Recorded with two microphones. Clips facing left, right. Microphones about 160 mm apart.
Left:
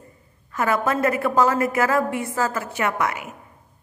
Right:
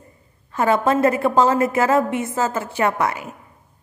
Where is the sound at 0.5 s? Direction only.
30° right (ahead or behind).